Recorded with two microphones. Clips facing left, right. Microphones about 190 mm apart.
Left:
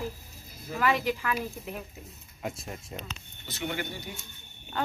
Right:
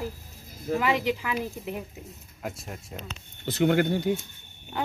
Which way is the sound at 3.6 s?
65° right (ahead or behind).